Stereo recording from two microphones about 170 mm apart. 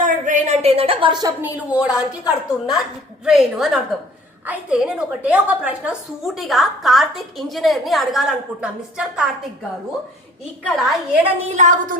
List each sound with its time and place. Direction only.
0.0 s a sound: 45° right (ahead or behind); by 1.3 s 30° right (ahead or behind)
1.4 s a woman's voice: 10° right (ahead or behind)
10.6 s a woman's voice: centre (ahead or behind)
11.2 s a woman's voice: 45° right (ahead or behind)